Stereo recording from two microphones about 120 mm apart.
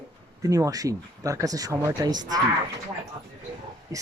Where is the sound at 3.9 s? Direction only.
30° right (ahead or behind).